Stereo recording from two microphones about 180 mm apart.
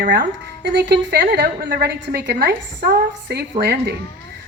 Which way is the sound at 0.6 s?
70° right (ahead or behind).